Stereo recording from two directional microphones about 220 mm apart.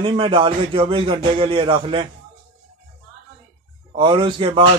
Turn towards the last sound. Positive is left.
turn(degrees=-25)  # may be behind; listen again after turning